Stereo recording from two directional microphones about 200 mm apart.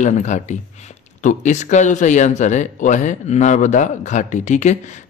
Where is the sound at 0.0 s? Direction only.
35° left (ahead or behind).